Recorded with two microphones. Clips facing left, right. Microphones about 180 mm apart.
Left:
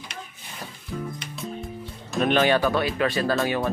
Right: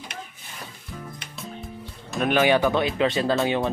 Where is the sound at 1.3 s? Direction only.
Centre (ahead or behind).